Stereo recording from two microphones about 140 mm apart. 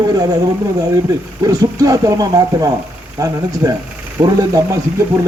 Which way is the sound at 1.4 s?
25° right (ahead or behind).